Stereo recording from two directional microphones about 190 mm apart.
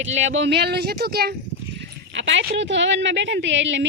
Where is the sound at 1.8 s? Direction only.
75° right (ahead or behind).